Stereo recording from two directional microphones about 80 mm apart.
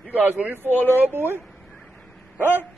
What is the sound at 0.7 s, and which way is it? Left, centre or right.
Speech, left.